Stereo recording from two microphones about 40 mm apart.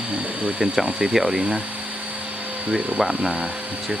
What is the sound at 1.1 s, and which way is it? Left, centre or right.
Speech, centre.